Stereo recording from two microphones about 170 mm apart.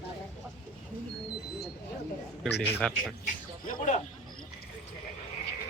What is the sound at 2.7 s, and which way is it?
Speech, 5° left (ahead or behind).